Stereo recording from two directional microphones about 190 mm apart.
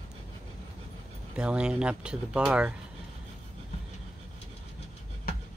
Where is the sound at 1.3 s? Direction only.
5° right (ahead or behind).